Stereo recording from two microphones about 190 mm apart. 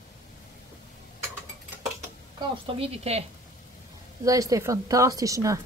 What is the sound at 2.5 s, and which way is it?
Speech, 30° right (ahead or behind).